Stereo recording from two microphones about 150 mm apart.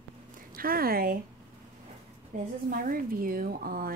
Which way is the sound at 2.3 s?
55° right (ahead or behind).